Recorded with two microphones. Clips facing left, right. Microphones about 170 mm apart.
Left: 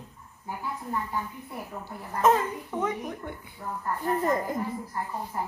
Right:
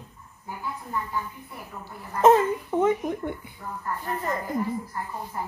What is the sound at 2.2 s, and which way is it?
Speech, 25° right (ahead or behind).